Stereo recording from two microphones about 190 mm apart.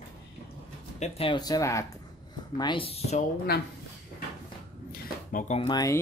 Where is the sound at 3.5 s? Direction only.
55° left (ahead or behind).